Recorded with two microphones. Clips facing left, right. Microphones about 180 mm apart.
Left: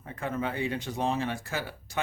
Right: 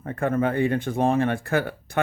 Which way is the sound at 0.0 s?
55° right (ahead or behind).